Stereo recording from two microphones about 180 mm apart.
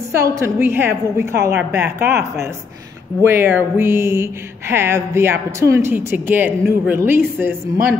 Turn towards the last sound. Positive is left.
turn(degrees=-15)  # may be behind; listen again after turning